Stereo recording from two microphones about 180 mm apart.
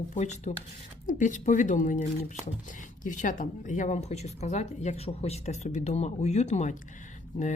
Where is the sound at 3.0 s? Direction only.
45° left (ahead or behind).